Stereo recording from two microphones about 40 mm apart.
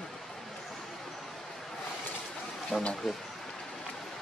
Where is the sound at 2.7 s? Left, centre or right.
Centre.